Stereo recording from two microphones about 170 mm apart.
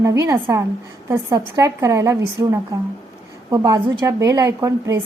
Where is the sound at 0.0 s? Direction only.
20° right (ahead or behind).